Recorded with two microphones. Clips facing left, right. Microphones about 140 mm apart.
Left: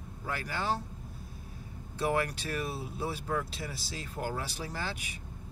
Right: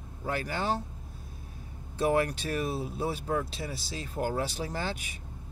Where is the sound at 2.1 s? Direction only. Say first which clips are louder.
Right 4 dB; 25° right (ahead or behind).